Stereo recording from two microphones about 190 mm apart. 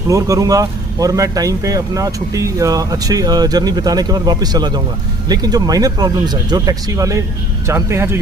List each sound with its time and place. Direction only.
0.1 s speech: 15° right (ahead or behind)